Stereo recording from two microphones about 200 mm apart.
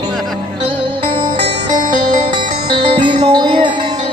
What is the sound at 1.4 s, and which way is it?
Music, 20° right (ahead or behind).